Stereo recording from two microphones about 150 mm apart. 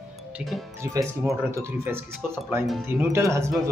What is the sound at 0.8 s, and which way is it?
Speech, 20° right (ahead or behind).